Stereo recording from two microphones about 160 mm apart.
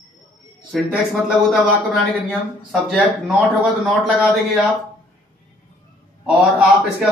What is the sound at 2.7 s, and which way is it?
A man's voice, centre (ahead or behind).